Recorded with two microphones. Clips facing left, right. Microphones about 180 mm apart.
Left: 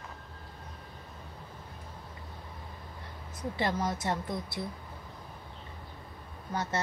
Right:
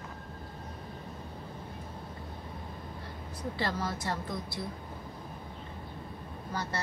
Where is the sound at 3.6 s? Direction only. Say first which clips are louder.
Left 3 dB; 20° left (ahead or behind).